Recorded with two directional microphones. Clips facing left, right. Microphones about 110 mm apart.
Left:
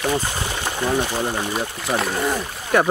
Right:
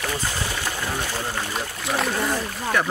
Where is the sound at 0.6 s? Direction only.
20° left (ahead or behind).